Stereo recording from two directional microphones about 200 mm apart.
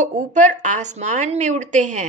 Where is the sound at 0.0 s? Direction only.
35° right (ahead or behind).